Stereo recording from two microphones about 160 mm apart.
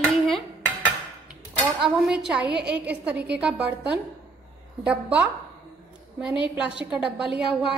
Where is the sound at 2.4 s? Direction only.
90° right.